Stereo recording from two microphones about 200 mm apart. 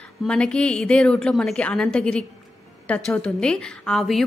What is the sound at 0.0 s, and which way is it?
A woman's voice, 5° left (ahead or behind).